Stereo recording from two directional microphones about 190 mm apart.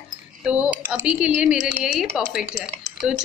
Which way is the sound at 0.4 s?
5° right (ahead or behind).